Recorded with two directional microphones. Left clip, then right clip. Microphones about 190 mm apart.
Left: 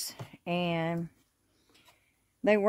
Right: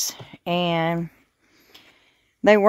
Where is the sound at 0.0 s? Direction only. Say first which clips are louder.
Right 11 dB; 40° right (ahead or behind).